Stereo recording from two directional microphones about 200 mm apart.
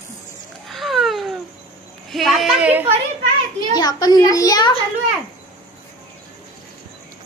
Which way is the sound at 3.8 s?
20° left (ahead or behind).